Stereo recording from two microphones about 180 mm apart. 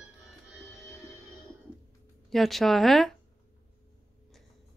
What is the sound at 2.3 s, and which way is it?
Speech, centre (ahead or behind).